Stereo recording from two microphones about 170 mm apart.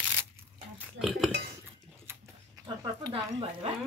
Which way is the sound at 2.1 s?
15° right (ahead or behind).